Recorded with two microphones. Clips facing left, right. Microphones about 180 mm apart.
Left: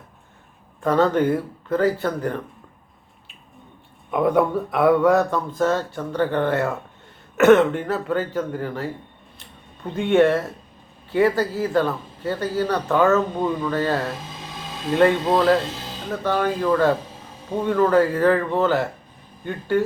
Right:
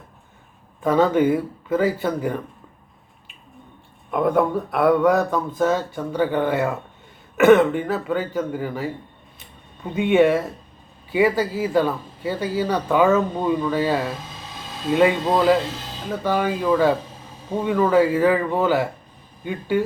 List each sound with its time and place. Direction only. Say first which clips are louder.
0.8 s speech: right 1 dB; 5° right (ahead or behind)
4.1 s speech: even; centre (ahead or behind)